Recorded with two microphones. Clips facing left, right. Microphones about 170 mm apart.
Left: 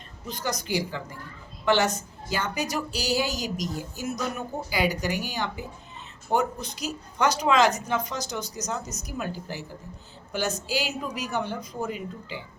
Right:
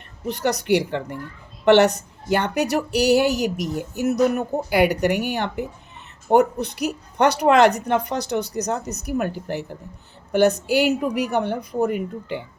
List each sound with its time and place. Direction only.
0.3 s a woman's voice: 65° right (ahead or behind)